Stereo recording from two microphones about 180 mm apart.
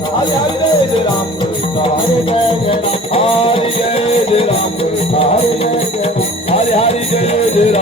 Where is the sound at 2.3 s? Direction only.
30° left (ahead or behind).